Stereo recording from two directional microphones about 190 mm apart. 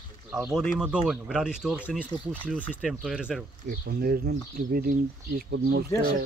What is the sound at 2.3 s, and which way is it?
A man's voice, 10° left (ahead or behind).